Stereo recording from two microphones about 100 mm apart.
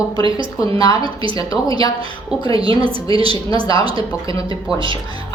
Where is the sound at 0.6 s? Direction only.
40° left (ahead or behind).